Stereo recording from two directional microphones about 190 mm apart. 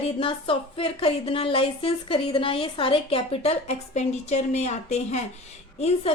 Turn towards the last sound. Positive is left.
turn(degrees=35)  # may be behind; listen again after turning